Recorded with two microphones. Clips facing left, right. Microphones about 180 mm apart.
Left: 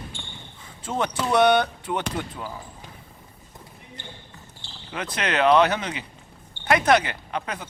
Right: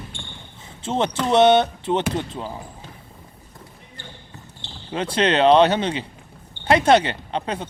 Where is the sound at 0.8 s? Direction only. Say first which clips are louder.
Right 4 dB; 25° right (ahead or behind).